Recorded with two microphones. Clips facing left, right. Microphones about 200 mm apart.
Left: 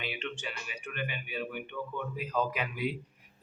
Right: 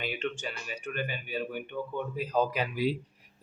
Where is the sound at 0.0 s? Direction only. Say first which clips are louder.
Right 4 dB; 45° right (ahead or behind).